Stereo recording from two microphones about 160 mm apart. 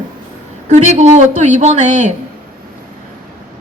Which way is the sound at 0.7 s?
45° right (ahead or behind).